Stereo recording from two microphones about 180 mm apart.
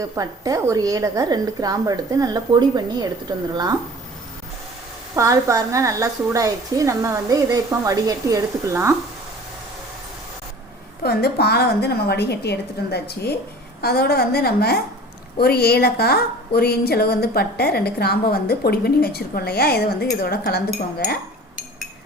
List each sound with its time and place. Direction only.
0.0 s a woman's voice: 20° right (ahead or behind)
5.1 s a woman's voice: 15° right (ahead or behind)
11.0 s a woman's voice: 60° left (ahead or behind)